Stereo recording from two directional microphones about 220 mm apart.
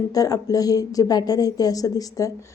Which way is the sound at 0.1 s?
15° left (ahead or behind).